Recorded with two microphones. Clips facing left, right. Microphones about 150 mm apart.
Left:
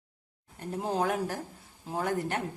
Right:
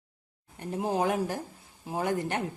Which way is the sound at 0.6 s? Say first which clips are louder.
Right 2 dB; 15° right (ahead or behind).